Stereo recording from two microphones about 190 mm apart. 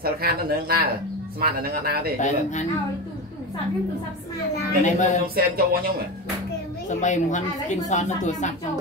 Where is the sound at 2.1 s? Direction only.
40° left (ahead or behind).